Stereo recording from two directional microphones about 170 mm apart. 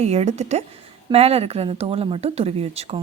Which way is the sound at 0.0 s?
40° right (ahead or behind).